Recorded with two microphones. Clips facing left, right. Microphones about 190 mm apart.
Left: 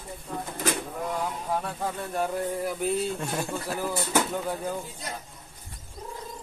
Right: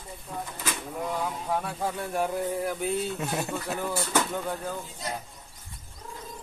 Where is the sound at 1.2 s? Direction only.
Centre (ahead or behind).